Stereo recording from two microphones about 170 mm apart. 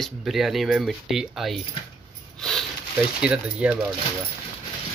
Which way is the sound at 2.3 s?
Centre (ahead or behind).